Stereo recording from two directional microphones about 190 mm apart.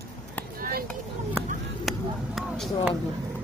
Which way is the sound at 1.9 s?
Centre (ahead or behind).